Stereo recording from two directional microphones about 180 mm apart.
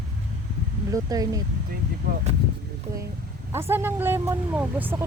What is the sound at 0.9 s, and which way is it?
Speech, 20° right (ahead or behind).